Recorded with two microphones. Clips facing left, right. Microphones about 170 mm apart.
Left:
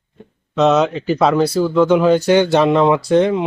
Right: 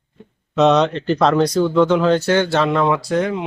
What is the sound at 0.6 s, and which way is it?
Speech, 5° left (ahead or behind).